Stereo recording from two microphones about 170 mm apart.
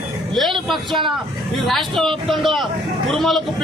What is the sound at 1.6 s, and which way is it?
Speech, centre (ahead or behind).